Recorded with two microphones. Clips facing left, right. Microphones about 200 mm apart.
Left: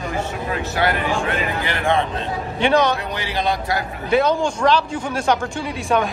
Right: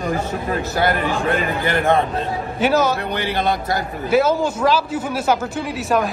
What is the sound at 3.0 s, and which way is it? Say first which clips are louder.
Speech: right 2 dB; 55° right (ahead or behind).